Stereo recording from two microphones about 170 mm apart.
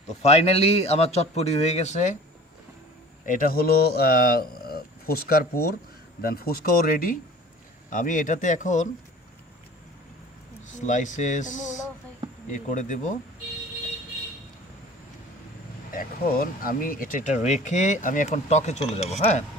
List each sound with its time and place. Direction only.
0.2 s a man's voice: 40° left (ahead or behind)
3.2 s speech: 55° left (ahead or behind)
10.7 s speech: 45° left (ahead or behind)
12.5 s speech: 45° left (ahead or behind)
15.9 s speech: 60° left (ahead or behind); by 19.5 s 40° left (ahead or behind)